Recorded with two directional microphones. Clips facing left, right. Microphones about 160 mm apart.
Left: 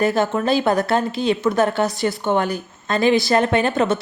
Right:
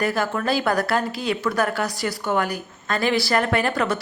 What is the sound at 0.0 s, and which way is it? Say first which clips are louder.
A woman's voice: left 4 dB; 25° left (ahead or behind).